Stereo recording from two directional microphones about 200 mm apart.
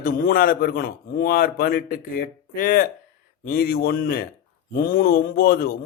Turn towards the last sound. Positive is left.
turn(degrees=45)  # may be behind; listen again after turning